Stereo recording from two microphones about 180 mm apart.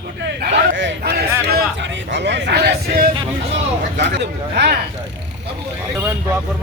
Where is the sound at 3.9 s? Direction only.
70° right (ahead or behind).